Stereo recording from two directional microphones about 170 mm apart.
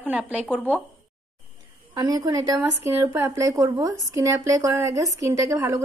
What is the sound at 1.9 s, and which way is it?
A woman's voice, 25° right (ahead or behind).